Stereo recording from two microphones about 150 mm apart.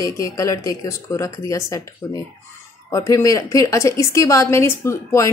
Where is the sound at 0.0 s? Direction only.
20° left (ahead or behind).